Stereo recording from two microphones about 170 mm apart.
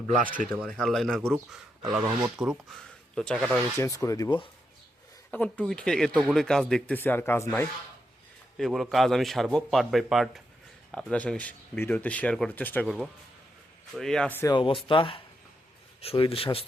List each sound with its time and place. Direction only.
0.2 s speech: 50° right (ahead or behind)
0.4 s speech: 5° left (ahead or behind)
3.8 s speech: 20° left (ahead or behind)
5.3 s speech: 5° left (ahead or behind)
8.5 s speech: centre (ahead or behind)
14.5 s speech: 30° left (ahead or behind)